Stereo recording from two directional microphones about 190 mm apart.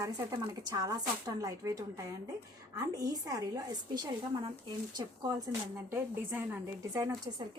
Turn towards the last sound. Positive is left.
turn(degrees=-15)  # may be behind; listen again after turning